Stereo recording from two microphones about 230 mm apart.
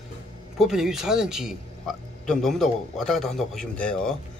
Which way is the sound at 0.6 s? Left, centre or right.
Centre.